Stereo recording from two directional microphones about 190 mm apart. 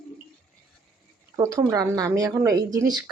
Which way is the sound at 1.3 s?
15° right (ahead or behind).